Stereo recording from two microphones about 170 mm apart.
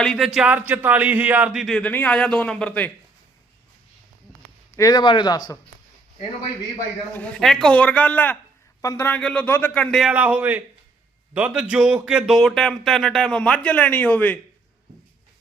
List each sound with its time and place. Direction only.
0.0 s speech: centre (ahead or behind)
0.3 s speech: 10° right (ahead or behind); by 2.9 s 10° left (ahead or behind)
4.8 s a man's voice: 25° left (ahead or behind)
7.1 s a man's voice: 10° left (ahead or behind)